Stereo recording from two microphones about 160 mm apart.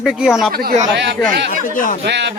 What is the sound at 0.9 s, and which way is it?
Speech, 90° right.